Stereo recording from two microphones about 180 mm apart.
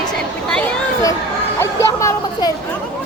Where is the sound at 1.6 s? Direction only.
15° left (ahead or behind).